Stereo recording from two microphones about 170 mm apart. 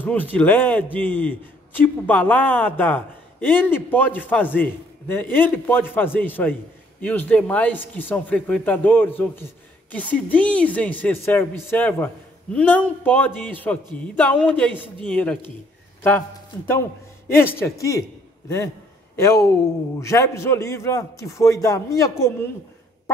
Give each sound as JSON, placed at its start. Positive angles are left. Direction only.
{"t": 0.0, "sound": "a man's voice", "side_deg": 10}
{"t": 19.1, "sound": "a man's voice", "side_deg": 15}